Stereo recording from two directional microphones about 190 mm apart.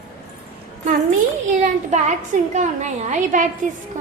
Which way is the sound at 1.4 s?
40° right (ahead or behind).